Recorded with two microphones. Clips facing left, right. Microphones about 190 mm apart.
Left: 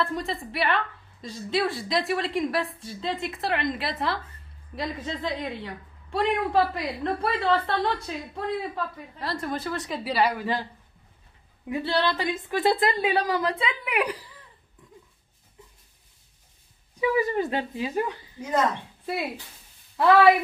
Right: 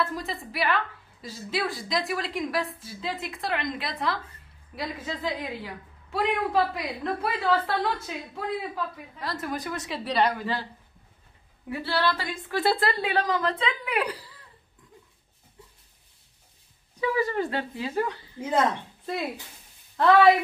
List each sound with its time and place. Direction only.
0.0 s a woman's voice: centre (ahead or behind)
9.6 s a woman's voice: 20° right (ahead or behind)
9.8 s a woman's voice: 5° left (ahead or behind)
10.4 s a woman's voice: 15° left (ahead or behind)
11.7 s a woman's voice: 20° left (ahead or behind)
17.0 s a woman's voice: 15° left (ahead or behind)
18.4 s speech: 30° right (ahead or behind)
20.0 s a woman's voice: 5° left (ahead or behind)